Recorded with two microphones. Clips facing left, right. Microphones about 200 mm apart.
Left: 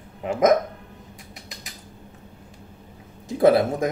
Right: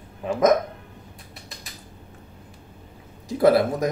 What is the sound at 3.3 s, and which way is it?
Speech, 25° left (ahead or behind).